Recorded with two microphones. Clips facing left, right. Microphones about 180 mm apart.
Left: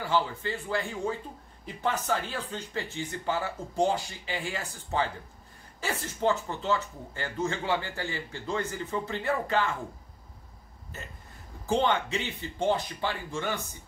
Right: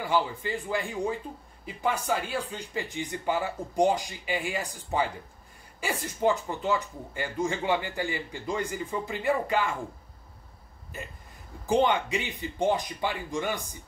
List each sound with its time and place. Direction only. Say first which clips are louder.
0.0 s speech: right 1 dB; 15° right (ahead or behind)
10.9 s speech: right 4 dB; 10° right (ahead or behind)